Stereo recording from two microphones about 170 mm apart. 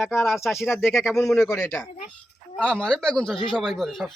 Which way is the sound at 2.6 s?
5° left (ahead or behind).